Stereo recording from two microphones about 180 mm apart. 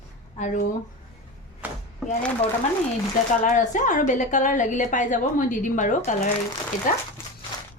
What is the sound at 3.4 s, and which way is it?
A woman's voice, 45° left (ahead or behind).